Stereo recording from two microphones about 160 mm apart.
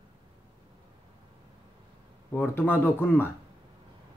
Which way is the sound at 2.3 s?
15° left (ahead or behind).